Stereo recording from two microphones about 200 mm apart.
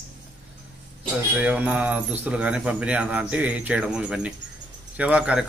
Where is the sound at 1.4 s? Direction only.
5° right (ahead or behind).